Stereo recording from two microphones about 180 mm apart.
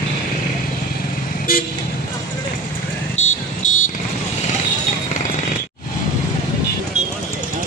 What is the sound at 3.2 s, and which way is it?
Music, 40° left (ahead or behind).